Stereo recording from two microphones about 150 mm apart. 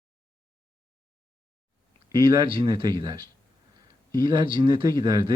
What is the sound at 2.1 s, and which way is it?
Speech, 30° right (ahead or behind).